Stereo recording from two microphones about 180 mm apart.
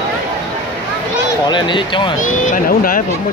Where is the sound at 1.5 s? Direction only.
25° left (ahead or behind).